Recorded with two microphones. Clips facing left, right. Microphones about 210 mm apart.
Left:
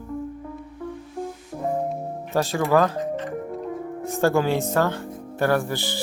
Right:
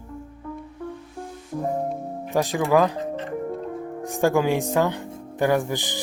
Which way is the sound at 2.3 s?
15° right (ahead or behind).